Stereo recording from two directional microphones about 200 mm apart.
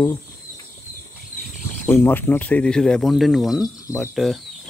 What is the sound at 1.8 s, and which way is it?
Speech, 10° left (ahead or behind).